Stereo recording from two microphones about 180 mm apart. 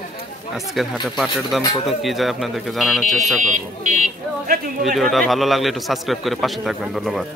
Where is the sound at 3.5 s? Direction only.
40° right (ahead or behind).